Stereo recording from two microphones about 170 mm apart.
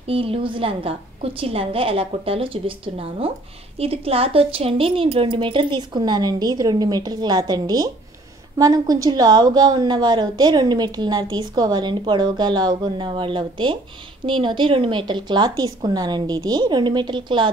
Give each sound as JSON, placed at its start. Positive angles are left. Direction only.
{"t": 0.0, "sound": "a woman's voice", "side_deg": -35}